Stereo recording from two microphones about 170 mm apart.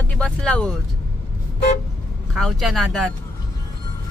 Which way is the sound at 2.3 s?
Centre (ahead or behind).